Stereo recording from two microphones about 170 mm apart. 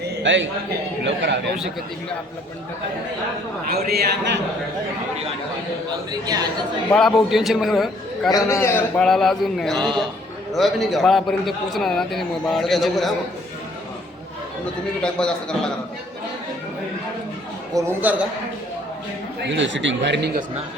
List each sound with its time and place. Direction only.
0.2 s a man's voice: 90° right
3.7 s a man's voice: 65° right (ahead or behind)
6.1 s a man's voice: 25° right (ahead or behind)
6.9 s a man's voice: centre (ahead or behind)
8.3 s a man's voice: 20° left (ahead or behind)
9.0 s a man's voice: centre (ahead or behind)
15.0 s a man's voice: 5° left (ahead or behind)
17.7 s a man's voice: 10° right (ahead or behind)
19.4 s speech: 90° right